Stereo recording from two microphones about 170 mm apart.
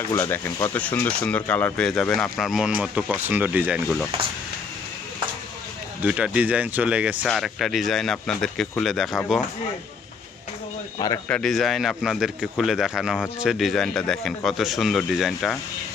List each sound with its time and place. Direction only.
0.1 s speech: 15° left (ahead or behind); by 3.8 s 10° right (ahead or behind)
6.0 s speech: 5° right (ahead or behind)
11.3 s speech: 5° left (ahead or behind)